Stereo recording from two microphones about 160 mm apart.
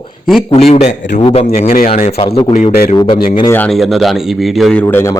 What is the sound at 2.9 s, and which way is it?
Speech, 30° left (ahead or behind).